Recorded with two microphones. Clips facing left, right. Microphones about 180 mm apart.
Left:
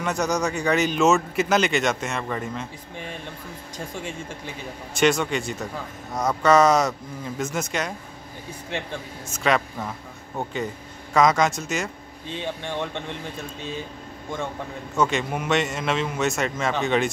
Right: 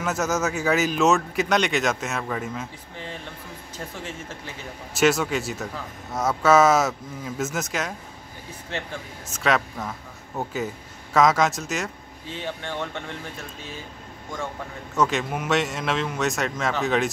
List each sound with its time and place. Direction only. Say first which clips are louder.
0.0 s a man's voice: left 1 dB; 5° right (ahead or behind)
3.7 s speech: left 2 dB; 15° left (ahead or behind)
4.9 s a man's voice: even; 5° right (ahead or behind)
8.7 s speech: left 1 dB; 15° left (ahead or behind)
9.3 s a man's voice: left 1 dB; centre (ahead or behind)
12.3 s speech: left 2 dB; 20° left (ahead or behind)
15.0 s a man's voice: even; centre (ahead or behind)